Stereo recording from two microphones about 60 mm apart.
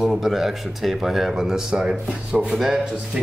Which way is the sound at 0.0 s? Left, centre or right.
Centre.